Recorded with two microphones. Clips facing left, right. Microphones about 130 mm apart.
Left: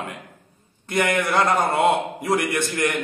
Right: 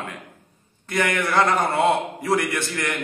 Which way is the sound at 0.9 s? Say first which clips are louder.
Left 1 dB; 20° left (ahead or behind).